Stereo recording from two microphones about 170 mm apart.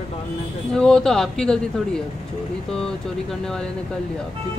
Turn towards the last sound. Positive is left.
turn(degrees=5)  # may be behind; listen again after turning